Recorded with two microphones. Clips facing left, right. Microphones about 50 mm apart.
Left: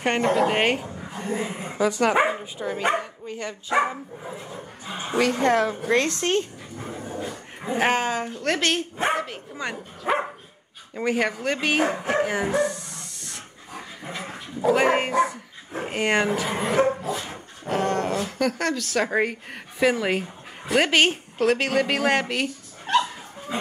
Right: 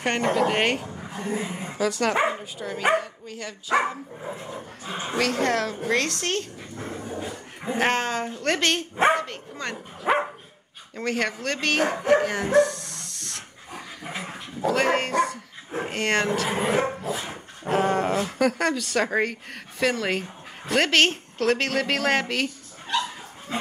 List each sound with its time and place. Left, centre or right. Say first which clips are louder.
0.0 s a woman's voice: left 2 dB; centre
5.1 s a woman's voice: left 3 dB; centre
7.2 s speech: left 1 dB; centre
10.1 s speech: right 1 dB; centre
11.0 s a woman's voice: left 3 dB; centre
14.0 s dog: even; centre
14.7 s a woman's voice: left 3 dB; centre
16.4 s speech: left 2 dB; centre
17.2 s dog: right 1 dB; centre
18.2 s a woman's voice: right 2 dB; centre
23.5 s dog: left 1 dB; centre